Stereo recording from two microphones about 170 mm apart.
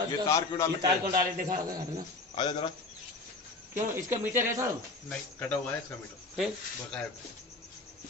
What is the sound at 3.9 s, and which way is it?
Speech, 15° right (ahead or behind).